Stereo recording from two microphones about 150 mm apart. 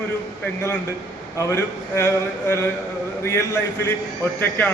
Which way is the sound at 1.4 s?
20° left (ahead or behind).